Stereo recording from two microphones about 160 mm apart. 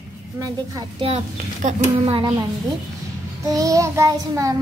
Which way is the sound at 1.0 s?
45° right (ahead or behind).